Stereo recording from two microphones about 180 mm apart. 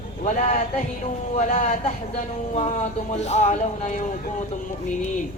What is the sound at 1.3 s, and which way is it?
A man's voice, 45° left (ahead or behind).